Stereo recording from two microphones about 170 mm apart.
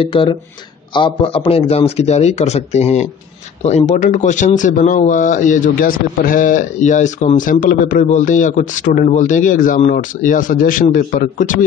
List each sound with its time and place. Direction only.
0.0 s a man's voice: 30° left (ahead or behind); by 11.5 s 50° left (ahead or behind)